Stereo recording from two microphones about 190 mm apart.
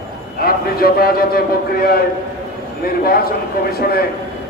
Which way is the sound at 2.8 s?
50° left (ahead or behind).